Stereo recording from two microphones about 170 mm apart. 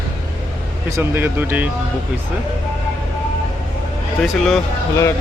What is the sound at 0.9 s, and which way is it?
Speech, 15° right (ahead or behind).